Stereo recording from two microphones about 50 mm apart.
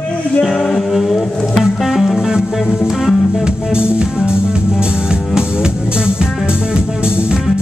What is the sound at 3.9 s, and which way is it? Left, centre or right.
Music, centre.